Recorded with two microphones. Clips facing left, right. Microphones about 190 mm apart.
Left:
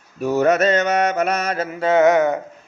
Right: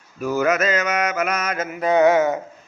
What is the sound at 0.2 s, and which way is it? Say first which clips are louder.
Mantra: left 3 dB; 35° left (ahead or behind).